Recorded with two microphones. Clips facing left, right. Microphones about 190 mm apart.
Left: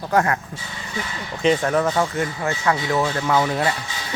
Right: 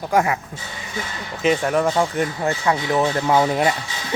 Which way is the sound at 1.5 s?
10° right (ahead or behind).